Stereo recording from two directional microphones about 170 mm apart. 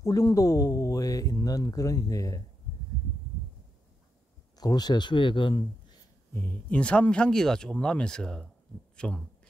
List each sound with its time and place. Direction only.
0.0 s speech: 20° left (ahead or behind)
4.6 s speech: 25° left (ahead or behind)
6.3 s speech: 10° left (ahead or behind)